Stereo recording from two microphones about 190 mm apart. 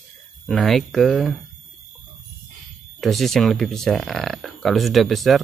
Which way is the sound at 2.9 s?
Centre (ahead or behind).